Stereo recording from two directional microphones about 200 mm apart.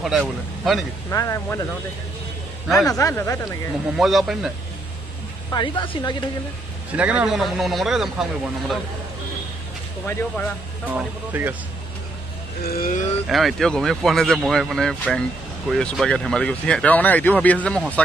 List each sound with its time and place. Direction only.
0.0 s speech: centre (ahead or behind)
1.1 s speech: 15° left (ahead or behind)
2.7 s speech: centre (ahead or behind)
3.0 s speech: 15° left (ahead or behind)
3.9 s speech: centre (ahead or behind)
5.5 s speech: 25° left (ahead or behind)
6.9 s speech: 5° right (ahead or behind)
10.9 s speech: 10° right (ahead or behind)
12.6 s speech: 40° left (ahead or behind)
13.3 s speech: centre (ahead or behind)